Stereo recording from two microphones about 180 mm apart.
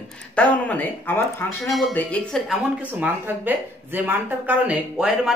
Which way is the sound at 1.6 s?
Centre (ahead or behind).